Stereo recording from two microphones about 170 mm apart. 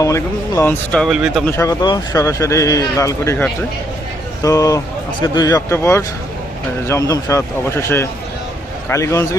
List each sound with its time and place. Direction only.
0.0 s speech: 20° left (ahead or behind)
1.0 s speech: centre (ahead or behind)
1.5 s speech: 15° left (ahead or behind)
4.4 s speech: 20° left (ahead or behind)